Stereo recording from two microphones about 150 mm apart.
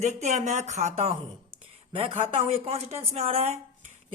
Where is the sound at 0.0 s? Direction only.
50° right (ahead or behind).